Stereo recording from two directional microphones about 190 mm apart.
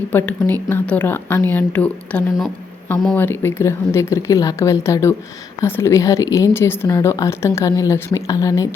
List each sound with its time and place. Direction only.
0.1 s speech: 10° left (ahead or behind)
3.2 s speech: 15° left (ahead or behind)